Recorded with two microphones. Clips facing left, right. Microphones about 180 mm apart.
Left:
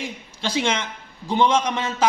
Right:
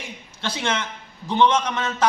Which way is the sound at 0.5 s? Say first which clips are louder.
Left 3 dB; 15° left (ahead or behind).